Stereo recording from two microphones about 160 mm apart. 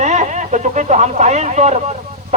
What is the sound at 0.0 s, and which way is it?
Speech, 45° right (ahead or behind).